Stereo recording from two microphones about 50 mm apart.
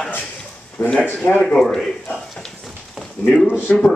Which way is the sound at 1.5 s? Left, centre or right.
Centre.